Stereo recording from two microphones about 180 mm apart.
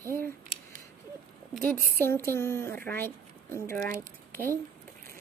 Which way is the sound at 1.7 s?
55° right (ahead or behind).